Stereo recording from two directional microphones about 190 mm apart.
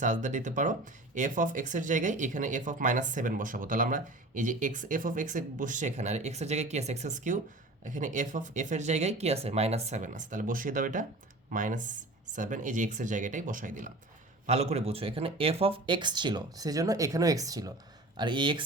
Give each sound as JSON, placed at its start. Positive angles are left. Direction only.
{"t": 0.0, "sound": "speech", "side_deg": -40}